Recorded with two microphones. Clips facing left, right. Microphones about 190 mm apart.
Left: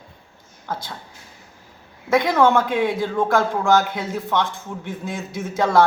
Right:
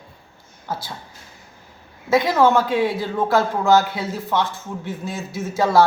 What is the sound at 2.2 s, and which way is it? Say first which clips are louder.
Speech: even; 5° right (ahead or behind).